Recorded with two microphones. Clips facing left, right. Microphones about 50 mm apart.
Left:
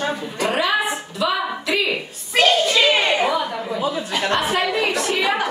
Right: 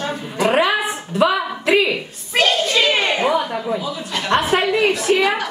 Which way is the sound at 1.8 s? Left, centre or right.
Centre.